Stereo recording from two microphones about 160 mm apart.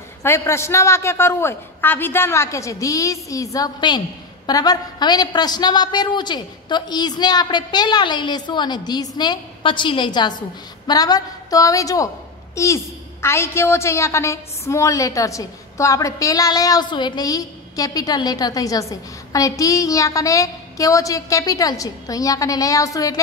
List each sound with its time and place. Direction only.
0.2 s a man's voice: 15° left (ahead or behind)